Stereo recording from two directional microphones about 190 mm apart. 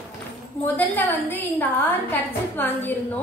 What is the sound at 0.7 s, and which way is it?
A woman's voice, 10° left (ahead or behind).